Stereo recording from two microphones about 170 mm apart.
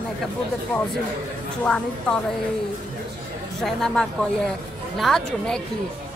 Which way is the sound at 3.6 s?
Centre (ahead or behind).